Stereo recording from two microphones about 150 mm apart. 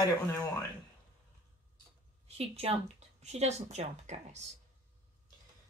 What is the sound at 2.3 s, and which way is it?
A woman's voice, 45° right (ahead or behind).